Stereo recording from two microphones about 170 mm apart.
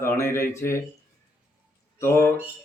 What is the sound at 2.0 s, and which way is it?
Speech, 15° left (ahead or behind).